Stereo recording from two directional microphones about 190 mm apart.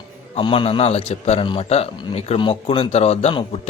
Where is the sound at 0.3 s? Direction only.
30° left (ahead or behind).